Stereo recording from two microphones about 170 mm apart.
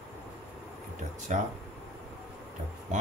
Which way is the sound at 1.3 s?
45° right (ahead or behind).